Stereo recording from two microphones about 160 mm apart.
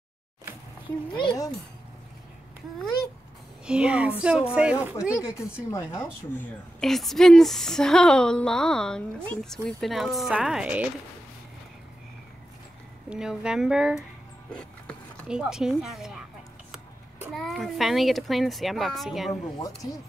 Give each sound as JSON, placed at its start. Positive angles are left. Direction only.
{"t": 1.1, "sound": "speech", "side_deg": 25}
{"t": 3.6, "sound": "a woman's voice", "side_deg": -5}
{"t": 5.7, "sound": "speech", "side_deg": 15}
{"t": 6.8, "sound": "a woman's voice", "side_deg": 0}
{"t": 13.1, "sound": "a woman's voice", "side_deg": -5}
{"t": 15.2, "sound": "a woman's voice", "side_deg": -5}
{"t": 17.3, "sound": "a woman's voice", "side_deg": 0}